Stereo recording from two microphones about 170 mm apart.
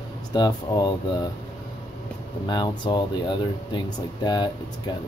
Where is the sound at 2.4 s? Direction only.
25° left (ahead or behind).